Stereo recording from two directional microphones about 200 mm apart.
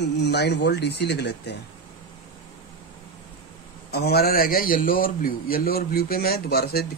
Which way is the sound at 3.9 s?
50° left (ahead or behind).